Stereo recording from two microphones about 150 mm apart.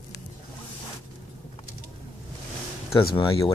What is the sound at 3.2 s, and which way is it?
Speech, 25° left (ahead or behind).